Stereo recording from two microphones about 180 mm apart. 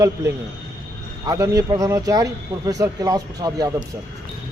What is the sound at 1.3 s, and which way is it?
A man's voice, 20° right (ahead or behind).